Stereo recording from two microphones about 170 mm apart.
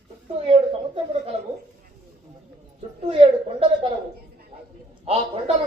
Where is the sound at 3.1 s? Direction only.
35° right (ahead or behind).